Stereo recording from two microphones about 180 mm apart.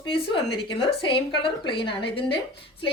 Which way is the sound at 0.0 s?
25° left (ahead or behind).